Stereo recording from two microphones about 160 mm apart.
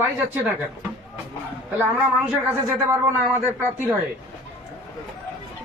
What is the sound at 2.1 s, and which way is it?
Speech, 15° right (ahead or behind).